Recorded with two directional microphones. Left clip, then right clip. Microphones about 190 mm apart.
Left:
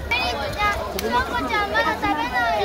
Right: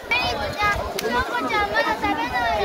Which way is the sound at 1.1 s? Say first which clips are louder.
Left 1 dB; 55° left (ahead or behind).